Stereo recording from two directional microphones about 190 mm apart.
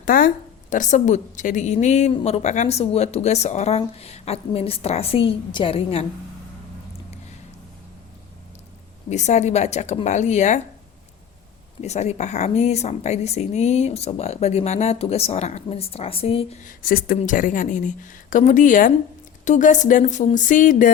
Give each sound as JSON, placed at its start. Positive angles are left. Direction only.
{"t": 0.0, "sound": "a woman's voice", "side_deg": 45}
{"t": 9.0, "sound": "speech", "side_deg": 40}
{"t": 11.8, "sound": "speech", "side_deg": 35}
{"t": 16.8, "sound": "speech", "side_deg": 50}